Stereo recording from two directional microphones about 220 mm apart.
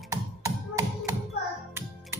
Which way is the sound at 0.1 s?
15° right (ahead or behind).